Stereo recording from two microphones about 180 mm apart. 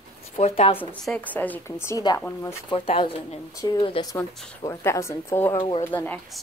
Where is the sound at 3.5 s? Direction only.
20° left (ahead or behind).